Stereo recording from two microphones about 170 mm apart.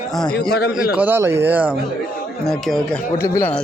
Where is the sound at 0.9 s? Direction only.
10° right (ahead or behind).